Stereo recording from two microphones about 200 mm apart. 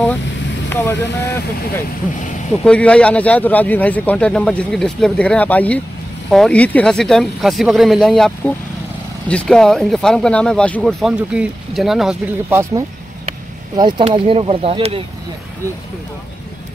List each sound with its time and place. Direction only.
0.7 s speech: 10° left (ahead or behind)
2.6 s speech: 5° left (ahead or behind); by 12.8 s 10° right (ahead or behind)
13.7 s speech: 25° right (ahead or behind)